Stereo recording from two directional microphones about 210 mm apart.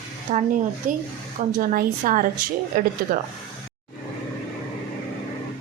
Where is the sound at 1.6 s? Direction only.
40° right (ahead or behind).